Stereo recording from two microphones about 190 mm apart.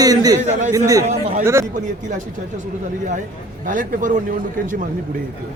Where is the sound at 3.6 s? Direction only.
45° right (ahead or behind).